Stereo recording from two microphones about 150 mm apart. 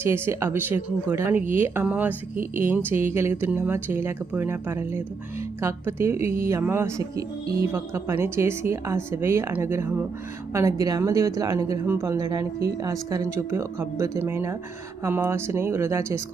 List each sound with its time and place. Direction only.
0.0 s speech: 15° right (ahead or behind)